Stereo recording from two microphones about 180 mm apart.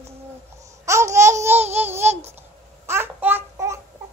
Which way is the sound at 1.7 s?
10° right (ahead or behind).